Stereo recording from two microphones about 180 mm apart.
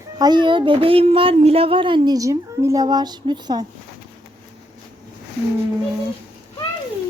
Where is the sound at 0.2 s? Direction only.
25° right (ahead or behind).